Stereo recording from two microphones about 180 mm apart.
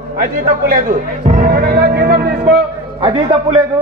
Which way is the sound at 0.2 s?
50° right (ahead or behind).